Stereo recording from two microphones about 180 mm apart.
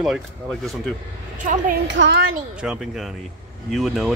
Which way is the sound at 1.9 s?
90° right.